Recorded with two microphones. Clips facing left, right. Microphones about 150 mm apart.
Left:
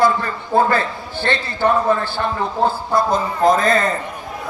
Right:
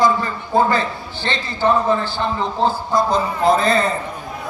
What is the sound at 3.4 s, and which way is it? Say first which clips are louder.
Speech: left 1 dB; 45° left (ahead or behind).